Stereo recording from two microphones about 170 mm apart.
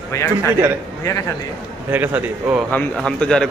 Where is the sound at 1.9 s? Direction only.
10° right (ahead or behind).